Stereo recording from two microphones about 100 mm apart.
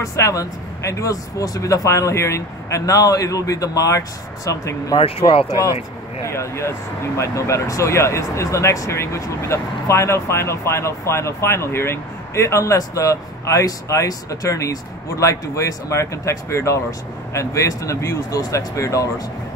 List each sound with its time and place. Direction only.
0.0 s speech: 30° left (ahead or behind)